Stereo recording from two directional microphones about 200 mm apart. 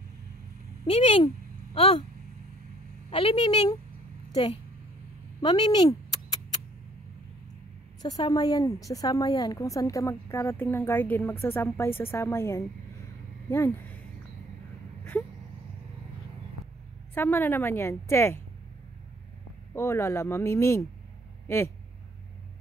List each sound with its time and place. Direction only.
0.8 s a woman's voice: 30° left (ahead or behind)
3.1 s a woman's voice: 25° left (ahead or behind)
5.4 s a sound: 20° left (ahead or behind)
8.0 s a woman's voice: 20° left (ahead or behind)
17.1 s a woman's voice: 10° left (ahead or behind)
19.7 s a woman's voice: 15° left (ahead or behind)